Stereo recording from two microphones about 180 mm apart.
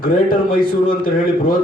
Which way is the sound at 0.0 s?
50° left (ahead or behind).